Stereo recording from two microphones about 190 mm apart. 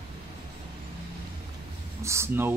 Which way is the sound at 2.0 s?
15° right (ahead or behind).